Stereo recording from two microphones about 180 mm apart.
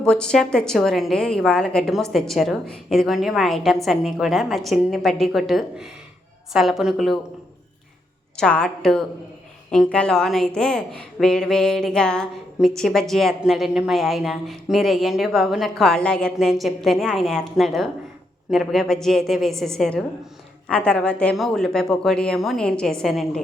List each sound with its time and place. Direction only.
0.0 s a woman's voice: 5° left (ahead or behind)
8.4 s a woman's voice: 5° left (ahead or behind)